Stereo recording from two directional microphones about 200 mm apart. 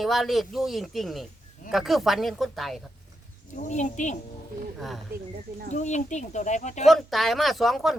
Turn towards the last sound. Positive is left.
turn(degrees=0)  # may be behind; listen again after turning